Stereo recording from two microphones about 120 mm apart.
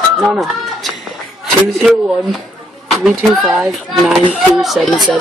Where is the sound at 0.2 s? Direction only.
Centre (ahead or behind).